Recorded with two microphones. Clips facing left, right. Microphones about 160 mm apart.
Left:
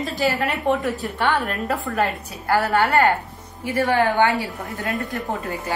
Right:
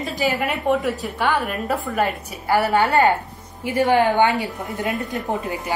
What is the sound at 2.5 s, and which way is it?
A woman's voice, 15° right (ahead or behind).